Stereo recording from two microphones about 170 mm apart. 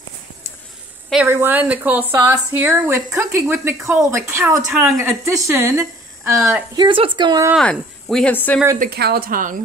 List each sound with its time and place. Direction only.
1.1 s a woman's voice: 10° right (ahead or behind)
7.5 s speech: 5° left (ahead or behind)
8.7 s speech: 65° right (ahead or behind)